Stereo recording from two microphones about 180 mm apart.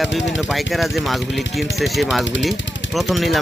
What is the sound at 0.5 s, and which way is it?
Speech, centre (ahead or behind).